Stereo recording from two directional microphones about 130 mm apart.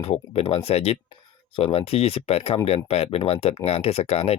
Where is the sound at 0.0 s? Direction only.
50° left (ahead or behind).